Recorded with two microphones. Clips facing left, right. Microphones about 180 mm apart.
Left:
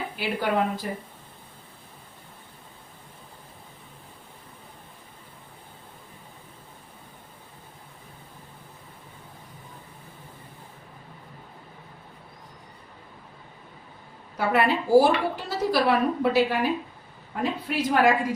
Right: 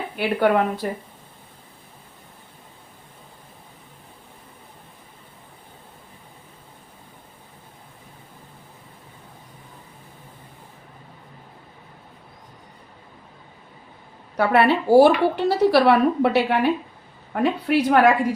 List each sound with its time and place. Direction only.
0.2 s a woman's voice: 60° right (ahead or behind)
14.3 s speech: 70° right (ahead or behind)